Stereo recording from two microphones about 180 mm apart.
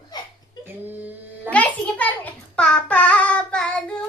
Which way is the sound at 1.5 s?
10° left (ahead or behind).